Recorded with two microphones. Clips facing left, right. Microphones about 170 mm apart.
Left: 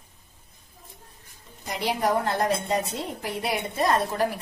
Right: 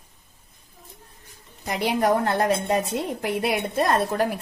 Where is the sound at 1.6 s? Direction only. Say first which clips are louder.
Right 4 dB; 55° right (ahead or behind).